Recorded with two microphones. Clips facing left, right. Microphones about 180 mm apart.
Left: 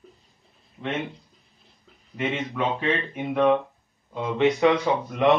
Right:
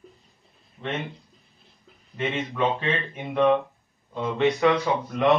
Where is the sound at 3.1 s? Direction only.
5° left (ahead or behind).